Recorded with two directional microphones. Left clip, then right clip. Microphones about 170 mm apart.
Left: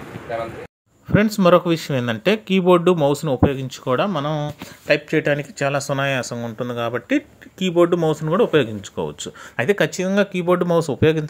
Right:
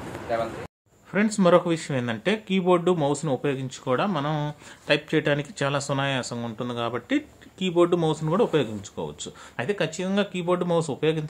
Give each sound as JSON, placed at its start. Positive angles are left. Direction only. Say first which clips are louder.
{"t": 1.1, "sound": "speech", "louder": "left 5 dB", "side_deg": 20}